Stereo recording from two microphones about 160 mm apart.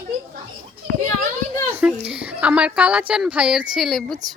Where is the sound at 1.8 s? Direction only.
5° right (ahead or behind).